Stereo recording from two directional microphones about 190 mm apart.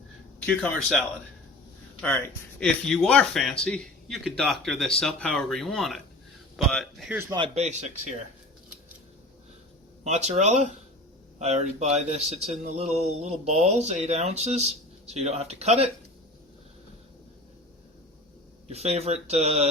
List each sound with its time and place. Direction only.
0.4 s speech: 5° left (ahead or behind)
7.1 s speech: 15° right (ahead or behind)
7.3 s speech: 30° right (ahead or behind)
10.0 s speech: 35° right (ahead or behind)
18.7 s speech: 35° right (ahead or behind)